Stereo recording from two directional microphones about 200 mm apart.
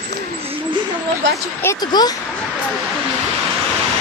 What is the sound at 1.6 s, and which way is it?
Speech, 20° left (ahead or behind).